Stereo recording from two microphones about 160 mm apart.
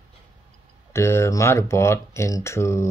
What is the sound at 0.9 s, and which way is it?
Speech, 15° left (ahead or behind).